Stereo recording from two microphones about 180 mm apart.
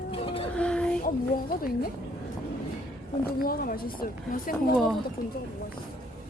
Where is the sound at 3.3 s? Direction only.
55° left (ahead or behind).